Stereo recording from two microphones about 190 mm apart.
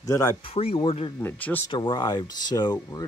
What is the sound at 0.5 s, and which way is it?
Speech, 30° left (ahead or behind).